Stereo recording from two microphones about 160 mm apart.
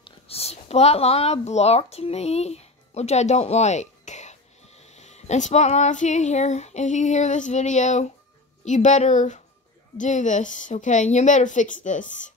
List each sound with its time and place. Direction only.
0.0 s a woman's voice: 40° left (ahead or behind)